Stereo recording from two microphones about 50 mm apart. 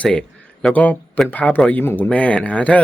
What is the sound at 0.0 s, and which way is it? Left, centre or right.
A man's voice, left.